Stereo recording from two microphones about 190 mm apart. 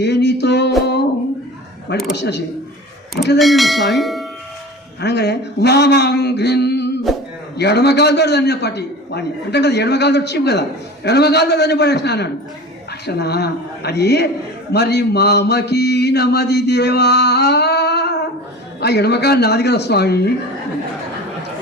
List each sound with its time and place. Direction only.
0.0 s music: 65° left (ahead or behind)
2.1 s mantra: 65° left (ahead or behind)
3.3 s speech: centre (ahead or behind)
4.9 s a man's voice: 60° left (ahead or behind)
7.5 s mantra: 60° left (ahead or behind)